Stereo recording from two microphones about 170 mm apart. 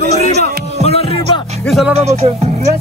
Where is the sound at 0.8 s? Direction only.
35° left (ahead or behind).